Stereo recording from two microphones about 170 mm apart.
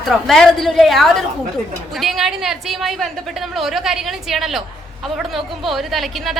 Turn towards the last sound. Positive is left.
turn(degrees=0)  # may be behind; listen again after turning